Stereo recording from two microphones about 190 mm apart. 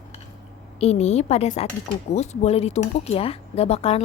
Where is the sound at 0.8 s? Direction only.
35° left (ahead or behind).